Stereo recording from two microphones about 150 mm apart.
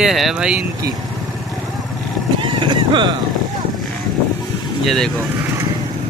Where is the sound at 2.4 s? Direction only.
30° right (ahead or behind).